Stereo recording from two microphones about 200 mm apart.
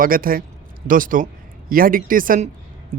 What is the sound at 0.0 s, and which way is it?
A man's voice, 45° right (ahead or behind).